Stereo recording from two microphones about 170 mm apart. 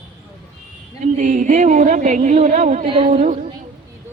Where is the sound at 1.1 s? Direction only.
50° right (ahead or behind).